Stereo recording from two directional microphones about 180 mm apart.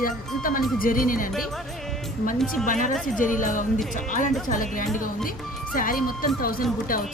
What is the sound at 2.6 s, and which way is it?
Speech, 45° left (ahead or behind).